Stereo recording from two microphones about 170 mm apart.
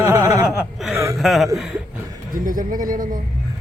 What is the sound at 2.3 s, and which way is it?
Speech, 55° right (ahead or behind).